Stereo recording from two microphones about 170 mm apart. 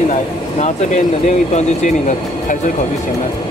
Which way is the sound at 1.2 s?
45° left (ahead or behind).